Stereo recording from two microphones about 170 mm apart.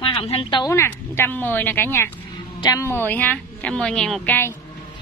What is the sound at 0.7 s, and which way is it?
A woman's voice, 15° left (ahead or behind).